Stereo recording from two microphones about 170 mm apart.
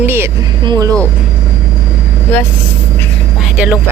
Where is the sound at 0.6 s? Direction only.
25° right (ahead or behind).